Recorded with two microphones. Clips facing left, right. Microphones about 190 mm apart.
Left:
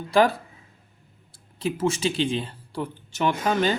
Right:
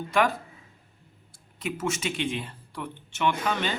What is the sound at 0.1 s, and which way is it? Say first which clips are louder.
Speech: left 5 dB; 30° left (ahead or behind).